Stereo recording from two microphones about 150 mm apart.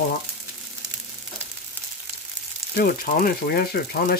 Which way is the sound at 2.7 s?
75° left (ahead or behind).